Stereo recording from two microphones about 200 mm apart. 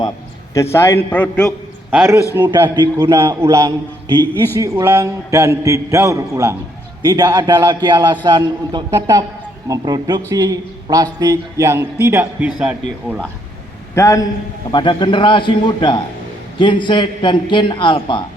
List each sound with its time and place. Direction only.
0.5 s a man's voice: 15° left (ahead or behind)
1.9 s a man's voice: 10° right (ahead or behind)
13.9 s a man's voice: 15° left (ahead or behind)